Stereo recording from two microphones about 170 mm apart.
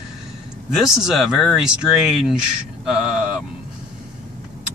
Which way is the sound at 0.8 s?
Centre (ahead or behind).